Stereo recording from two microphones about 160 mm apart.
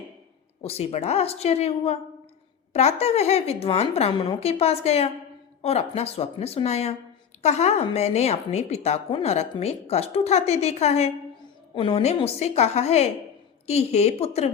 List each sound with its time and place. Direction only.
0.6 s a woman's voice: 40° left (ahead or behind)